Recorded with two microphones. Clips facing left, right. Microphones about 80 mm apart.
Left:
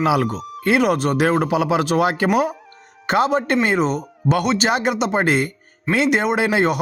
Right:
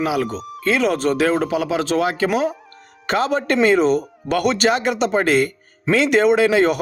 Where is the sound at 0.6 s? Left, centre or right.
Centre.